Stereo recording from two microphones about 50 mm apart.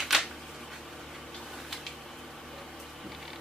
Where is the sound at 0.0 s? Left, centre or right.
Centre.